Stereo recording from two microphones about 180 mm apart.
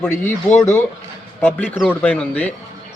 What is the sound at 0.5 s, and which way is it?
A man's voice, 10° left (ahead or behind).